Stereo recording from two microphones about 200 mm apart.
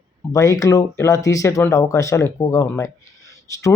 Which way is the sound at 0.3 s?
15° left (ahead or behind).